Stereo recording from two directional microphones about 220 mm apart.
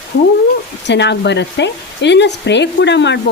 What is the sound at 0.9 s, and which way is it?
Speech, 50° left (ahead or behind).